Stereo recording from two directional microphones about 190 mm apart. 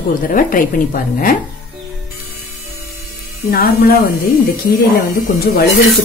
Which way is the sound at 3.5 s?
50° left (ahead or behind).